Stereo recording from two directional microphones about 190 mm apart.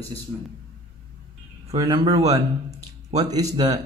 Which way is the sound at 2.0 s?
20° right (ahead or behind).